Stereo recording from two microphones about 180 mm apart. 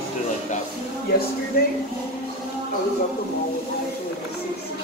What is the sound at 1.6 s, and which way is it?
Speech, 60° left (ahead or behind).